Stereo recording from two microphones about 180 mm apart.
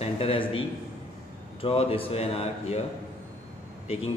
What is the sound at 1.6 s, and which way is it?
A man's voice, 30° left (ahead or behind).